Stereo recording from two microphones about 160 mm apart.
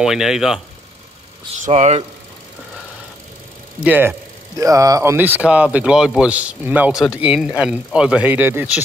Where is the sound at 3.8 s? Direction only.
10° right (ahead or behind).